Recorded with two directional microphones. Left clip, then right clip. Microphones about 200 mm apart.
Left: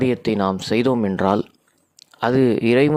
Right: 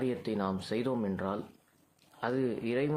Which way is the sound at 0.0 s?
45° left (ahead or behind).